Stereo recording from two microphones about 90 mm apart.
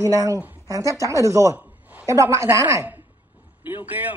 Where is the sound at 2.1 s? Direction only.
35° right (ahead or behind).